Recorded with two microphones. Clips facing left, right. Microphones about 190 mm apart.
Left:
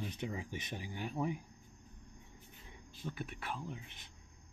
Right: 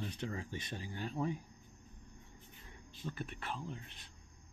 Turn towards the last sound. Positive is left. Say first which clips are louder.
# even
turn(degrees=15)  # may be behind; listen again after turning